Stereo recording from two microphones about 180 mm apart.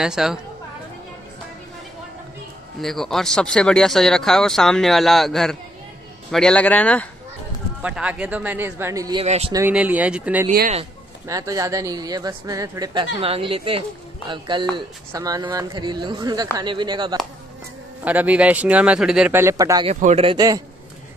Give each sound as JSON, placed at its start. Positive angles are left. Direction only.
{"t": 0.0, "sound": "speech", "side_deg": -5}
{"t": 2.8, "sound": "speech", "side_deg": 0}
{"t": 7.8, "sound": "speech", "side_deg": -5}
{"t": 9.2, "sound": "speech", "side_deg": -35}
{"t": 9.5, "sound": "speech", "side_deg": -10}
{"t": 11.2, "sound": "speech", "side_deg": -20}
{"t": 13.2, "sound": "speech", "side_deg": -30}
{"t": 18.0, "sound": "speech", "side_deg": -10}
{"t": 19.9, "sound": "speech", "side_deg": -40}
{"t": 20.3, "sound": "speech", "side_deg": -20}